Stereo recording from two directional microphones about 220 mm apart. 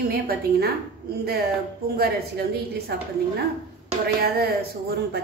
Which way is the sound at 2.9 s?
45° right (ahead or behind).